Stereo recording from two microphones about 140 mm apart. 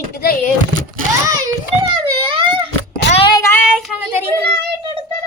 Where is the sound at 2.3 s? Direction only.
40° right (ahead or behind).